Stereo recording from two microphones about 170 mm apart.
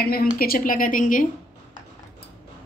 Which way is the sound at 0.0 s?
60° left (ahead or behind).